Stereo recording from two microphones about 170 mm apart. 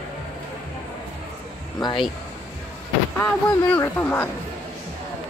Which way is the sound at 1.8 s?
30° left (ahead or behind).